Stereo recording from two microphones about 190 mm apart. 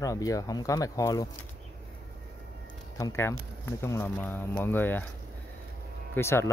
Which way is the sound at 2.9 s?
15° left (ahead or behind).